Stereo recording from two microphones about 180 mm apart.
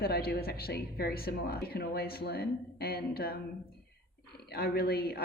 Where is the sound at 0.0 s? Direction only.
60° left (ahead or behind).